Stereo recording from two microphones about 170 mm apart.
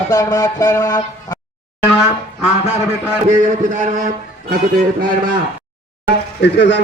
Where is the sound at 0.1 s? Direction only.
20° left (ahead or behind).